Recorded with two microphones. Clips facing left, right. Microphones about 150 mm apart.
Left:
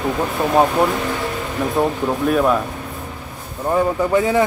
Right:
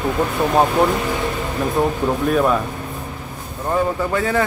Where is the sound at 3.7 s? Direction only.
15° left (ahead or behind).